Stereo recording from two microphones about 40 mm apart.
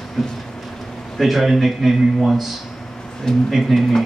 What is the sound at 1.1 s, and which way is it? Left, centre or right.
Speech, centre.